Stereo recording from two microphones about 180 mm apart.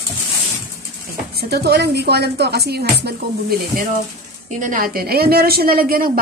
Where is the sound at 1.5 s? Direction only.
65° right (ahead or behind).